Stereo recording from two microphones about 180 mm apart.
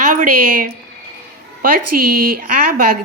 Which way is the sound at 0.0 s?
45° right (ahead or behind).